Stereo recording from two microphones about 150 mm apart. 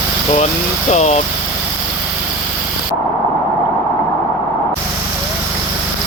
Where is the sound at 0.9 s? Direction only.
45° left (ahead or behind).